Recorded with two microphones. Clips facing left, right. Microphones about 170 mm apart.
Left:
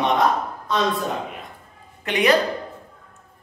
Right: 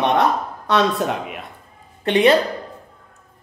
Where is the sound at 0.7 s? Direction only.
80° right.